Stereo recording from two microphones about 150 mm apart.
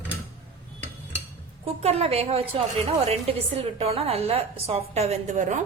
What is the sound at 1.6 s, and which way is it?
A woman's voice, 45° right (ahead or behind).